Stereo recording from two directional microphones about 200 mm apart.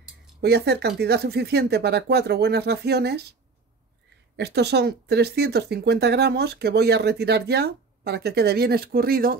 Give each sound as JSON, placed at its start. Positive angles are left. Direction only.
{"t": 0.4, "sound": "speech", "side_deg": -55}
{"t": 4.4, "sound": "speech", "side_deg": -55}